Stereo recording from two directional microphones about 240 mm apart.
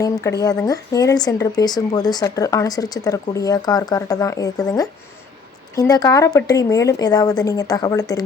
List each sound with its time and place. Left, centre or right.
0.0 s speech: centre